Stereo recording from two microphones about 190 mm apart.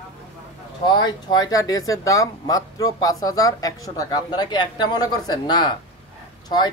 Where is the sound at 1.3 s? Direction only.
20° left (ahead or behind).